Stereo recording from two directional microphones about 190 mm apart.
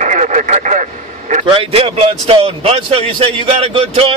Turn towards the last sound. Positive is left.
turn(degrees=-30)  # may be behind; listen again after turning